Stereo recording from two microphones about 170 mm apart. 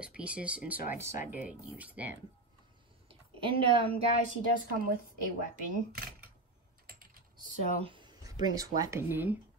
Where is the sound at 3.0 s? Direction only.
30° right (ahead or behind).